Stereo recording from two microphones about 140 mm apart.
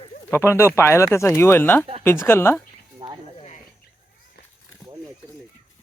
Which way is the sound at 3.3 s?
55° left (ahead or behind).